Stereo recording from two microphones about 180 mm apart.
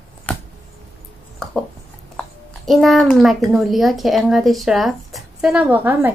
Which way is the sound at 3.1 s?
Centre (ahead or behind).